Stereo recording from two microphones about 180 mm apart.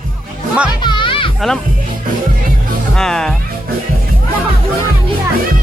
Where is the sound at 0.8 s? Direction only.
25° left (ahead or behind).